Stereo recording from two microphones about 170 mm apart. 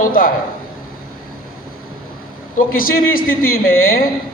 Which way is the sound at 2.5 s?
55° left (ahead or behind).